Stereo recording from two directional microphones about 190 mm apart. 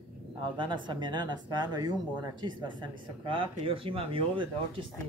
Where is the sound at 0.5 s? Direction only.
25° right (ahead or behind).